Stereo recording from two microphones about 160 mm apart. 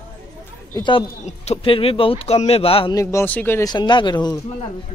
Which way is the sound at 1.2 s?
40° left (ahead or behind).